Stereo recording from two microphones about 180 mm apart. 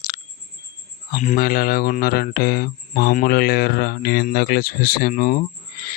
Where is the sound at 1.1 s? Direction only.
45° left (ahead or behind).